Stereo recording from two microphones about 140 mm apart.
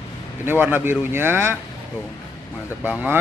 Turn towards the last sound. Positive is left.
turn(degrees=-10)  # may be behind; listen again after turning